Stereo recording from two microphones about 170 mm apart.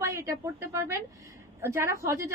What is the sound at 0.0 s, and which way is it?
A woman's voice, 15° right (ahead or behind).